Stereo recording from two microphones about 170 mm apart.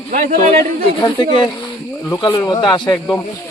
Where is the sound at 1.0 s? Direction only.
25° left (ahead or behind).